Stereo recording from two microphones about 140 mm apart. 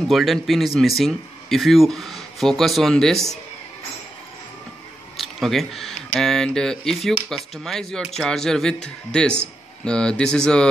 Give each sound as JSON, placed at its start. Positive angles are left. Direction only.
{"t": 0.1, "sound": "speech", "side_deg": 0}
{"t": 5.1, "sound": "speech", "side_deg": 0}